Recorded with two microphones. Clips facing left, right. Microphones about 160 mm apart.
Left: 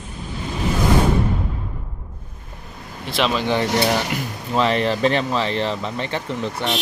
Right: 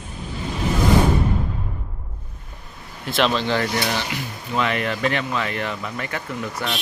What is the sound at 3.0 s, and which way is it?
Speech, centre (ahead or behind).